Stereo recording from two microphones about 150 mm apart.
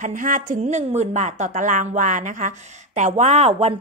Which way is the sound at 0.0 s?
60° right (ahead or behind).